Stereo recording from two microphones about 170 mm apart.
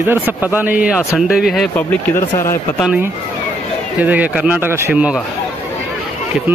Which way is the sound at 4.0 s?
10° right (ahead or behind).